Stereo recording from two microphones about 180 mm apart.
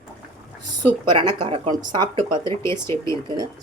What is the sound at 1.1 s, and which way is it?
Speech, 25° right (ahead or behind).